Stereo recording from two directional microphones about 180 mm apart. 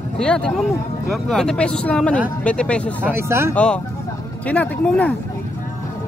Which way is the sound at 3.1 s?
15° right (ahead or behind).